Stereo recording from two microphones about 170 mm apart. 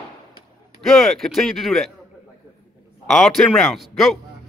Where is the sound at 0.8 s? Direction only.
Centre (ahead or behind).